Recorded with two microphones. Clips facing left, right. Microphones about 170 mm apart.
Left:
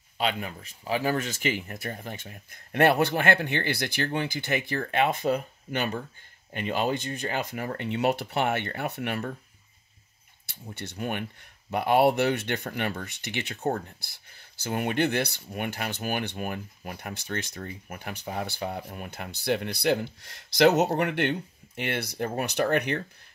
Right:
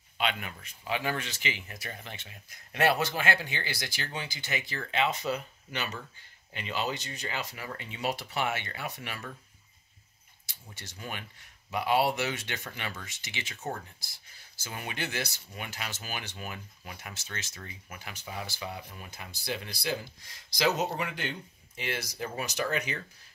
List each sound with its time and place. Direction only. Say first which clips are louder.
0.2 s speech: left 4 dB; 35° left (ahead or behind); by 9.2 s 60° left (ahead or behind)
10.4 s speech: left 10 dB; 60° left (ahead or behind)